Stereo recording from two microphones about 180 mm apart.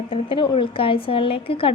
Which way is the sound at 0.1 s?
30° left (ahead or behind).